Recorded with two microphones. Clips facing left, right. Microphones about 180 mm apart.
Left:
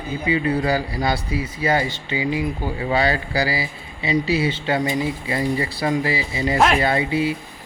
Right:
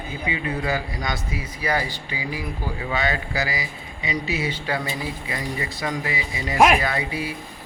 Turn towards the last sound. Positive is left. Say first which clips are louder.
# left 6 dB
turn(degrees=25)  # may be behind; listen again after turning